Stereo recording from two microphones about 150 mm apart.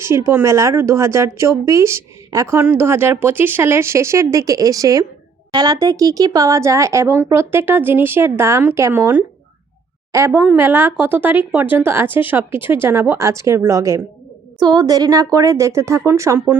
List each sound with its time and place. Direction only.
0.0 s a woman's voice: 15° right (ahead or behind)